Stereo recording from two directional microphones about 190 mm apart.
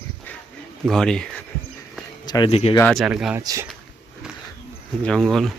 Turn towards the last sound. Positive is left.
turn(degrees=0)  # may be behind; listen again after turning